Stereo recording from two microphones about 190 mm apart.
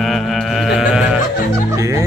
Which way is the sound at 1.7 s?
15° right (ahead or behind).